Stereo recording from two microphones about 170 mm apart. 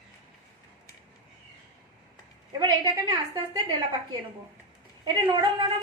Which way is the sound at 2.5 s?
25° right (ahead or behind).